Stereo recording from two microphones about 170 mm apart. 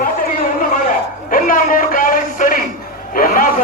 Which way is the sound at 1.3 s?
55° left (ahead or behind).